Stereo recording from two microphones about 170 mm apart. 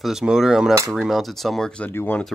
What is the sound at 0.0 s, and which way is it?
Speech, 5° right (ahead or behind).